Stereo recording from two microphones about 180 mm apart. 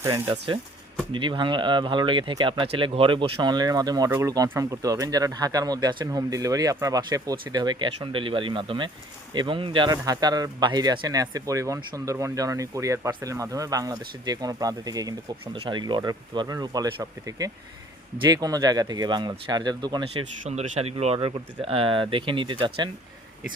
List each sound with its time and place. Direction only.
0.0 s speech: 25° right (ahead or behind)
20.4 s speech: 35° right (ahead or behind)